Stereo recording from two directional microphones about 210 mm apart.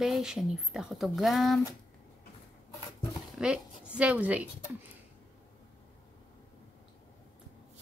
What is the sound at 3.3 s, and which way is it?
Speech, 5° right (ahead or behind).